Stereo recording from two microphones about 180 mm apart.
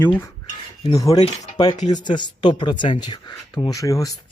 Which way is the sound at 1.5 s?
20° left (ahead or behind).